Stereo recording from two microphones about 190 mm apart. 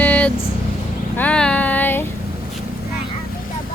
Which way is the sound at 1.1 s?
5° left (ahead or behind).